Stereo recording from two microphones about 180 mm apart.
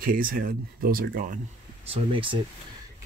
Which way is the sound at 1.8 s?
30° right (ahead or behind).